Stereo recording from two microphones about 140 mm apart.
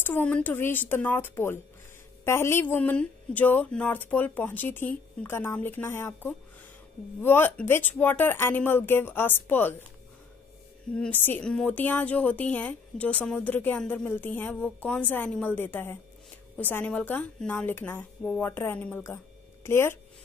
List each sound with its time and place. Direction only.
0.0 s a woman's voice: 15° left (ahead or behind)
11.0 s a woman's voice: 15° left (ahead or behind)